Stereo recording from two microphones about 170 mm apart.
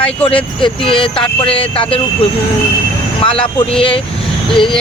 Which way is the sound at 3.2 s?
30° left (ahead or behind).